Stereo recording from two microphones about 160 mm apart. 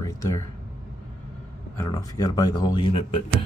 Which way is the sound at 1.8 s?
25° left (ahead or behind).